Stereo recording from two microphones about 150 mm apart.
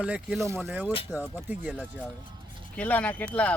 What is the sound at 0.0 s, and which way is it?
Speech, 5° right (ahead or behind).